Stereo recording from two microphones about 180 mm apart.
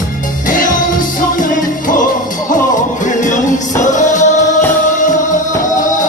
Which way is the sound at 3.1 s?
45° left (ahead or behind).